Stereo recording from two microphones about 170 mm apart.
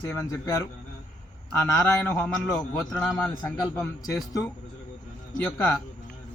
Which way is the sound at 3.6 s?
20° left (ahead or behind).